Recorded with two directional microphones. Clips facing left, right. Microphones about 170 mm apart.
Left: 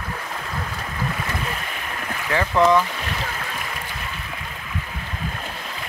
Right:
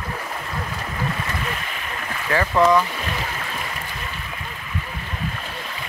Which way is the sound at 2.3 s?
15° left (ahead or behind).